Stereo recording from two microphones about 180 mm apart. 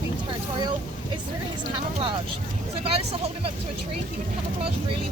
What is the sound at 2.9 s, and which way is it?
Speech, 30° right (ahead or behind).